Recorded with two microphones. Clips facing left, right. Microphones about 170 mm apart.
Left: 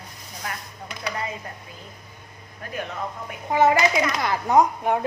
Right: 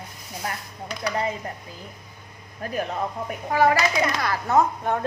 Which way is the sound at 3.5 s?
20° left (ahead or behind).